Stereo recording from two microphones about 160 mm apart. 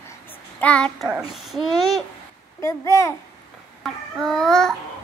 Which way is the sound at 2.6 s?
20° left (ahead or behind).